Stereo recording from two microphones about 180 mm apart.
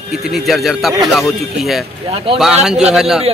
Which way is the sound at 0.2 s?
Centre (ahead or behind).